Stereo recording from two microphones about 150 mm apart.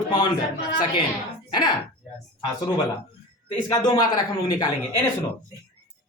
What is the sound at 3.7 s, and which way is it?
Speech, 25° left (ahead or behind).